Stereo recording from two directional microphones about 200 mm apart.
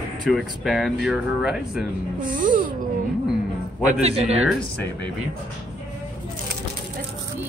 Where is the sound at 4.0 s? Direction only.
30° right (ahead or behind).